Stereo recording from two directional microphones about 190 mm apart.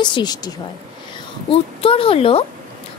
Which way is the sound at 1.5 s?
30° left (ahead or behind).